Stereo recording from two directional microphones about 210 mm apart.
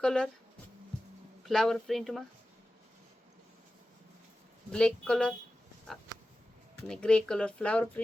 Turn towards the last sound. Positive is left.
turn(degrees=5)  # may be behind; listen again after turning